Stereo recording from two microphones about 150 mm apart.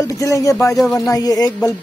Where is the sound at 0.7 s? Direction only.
Centre (ahead or behind).